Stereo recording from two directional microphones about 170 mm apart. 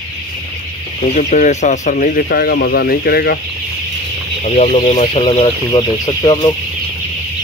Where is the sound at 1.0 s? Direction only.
40° left (ahead or behind); by 3.4 s 65° left (ahead or behind).